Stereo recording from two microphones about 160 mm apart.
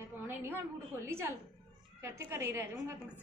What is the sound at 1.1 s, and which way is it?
A woman's voice, 15° right (ahead or behind).